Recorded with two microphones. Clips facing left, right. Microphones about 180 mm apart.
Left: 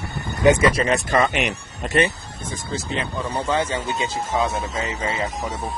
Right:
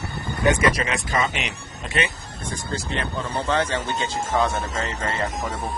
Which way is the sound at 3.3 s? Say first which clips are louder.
Even; 10° left (ahead or behind).